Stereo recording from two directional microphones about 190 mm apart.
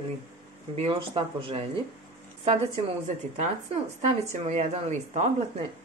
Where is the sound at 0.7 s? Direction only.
30° right (ahead or behind).